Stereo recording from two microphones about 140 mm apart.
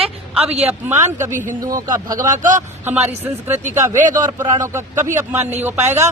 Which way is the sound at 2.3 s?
65° right (ahead or behind).